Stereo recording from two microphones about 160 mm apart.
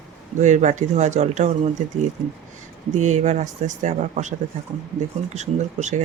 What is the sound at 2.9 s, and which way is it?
Speech, 45° right (ahead or behind).